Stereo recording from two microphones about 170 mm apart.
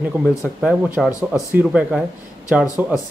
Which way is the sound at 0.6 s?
10° right (ahead or behind).